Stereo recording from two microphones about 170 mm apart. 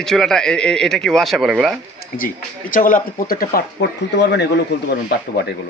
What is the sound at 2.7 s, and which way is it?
Speech, 55° left (ahead or behind).